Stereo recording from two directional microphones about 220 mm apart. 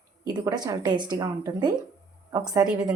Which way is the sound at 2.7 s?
5° right (ahead or behind).